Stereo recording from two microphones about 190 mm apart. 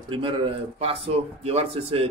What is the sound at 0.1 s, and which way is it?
A man's voice, 25° right (ahead or behind).